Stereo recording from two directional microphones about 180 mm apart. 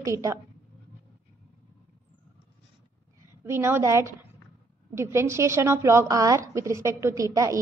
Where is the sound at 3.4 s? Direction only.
15° right (ahead or behind).